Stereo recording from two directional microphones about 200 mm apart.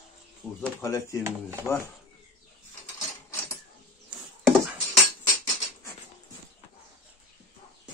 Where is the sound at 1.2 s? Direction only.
10° right (ahead or behind).